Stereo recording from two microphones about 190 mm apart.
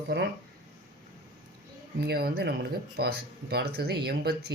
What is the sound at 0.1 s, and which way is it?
Speech, 65° right (ahead or behind).